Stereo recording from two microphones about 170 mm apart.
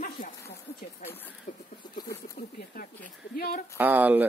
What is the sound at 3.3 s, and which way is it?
Speech, 60° left (ahead or behind).